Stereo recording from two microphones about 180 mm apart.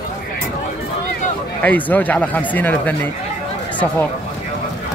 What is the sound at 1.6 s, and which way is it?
Speech, 10° left (ahead or behind).